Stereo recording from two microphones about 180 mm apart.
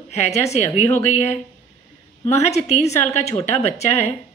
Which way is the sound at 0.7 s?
15° left (ahead or behind).